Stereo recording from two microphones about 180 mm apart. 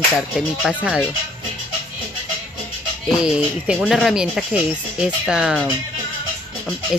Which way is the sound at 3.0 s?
5° right (ahead or behind).